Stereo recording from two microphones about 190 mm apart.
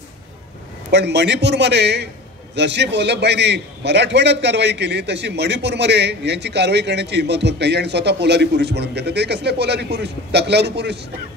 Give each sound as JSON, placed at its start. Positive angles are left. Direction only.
{"t": 0.9, "sound": "a man's voice", "side_deg": -65}